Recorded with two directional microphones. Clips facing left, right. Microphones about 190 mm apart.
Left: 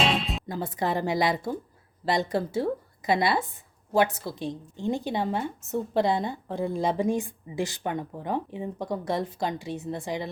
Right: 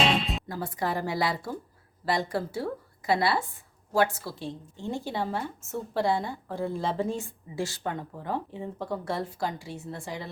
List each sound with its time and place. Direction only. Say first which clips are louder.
0.0 s music: even; centre (ahead or behind)
0.4 s a woman's voice: left 2 dB; 20° left (ahead or behind)